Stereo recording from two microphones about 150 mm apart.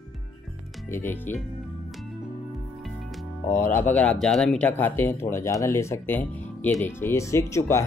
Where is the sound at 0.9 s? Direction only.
15° left (ahead or behind).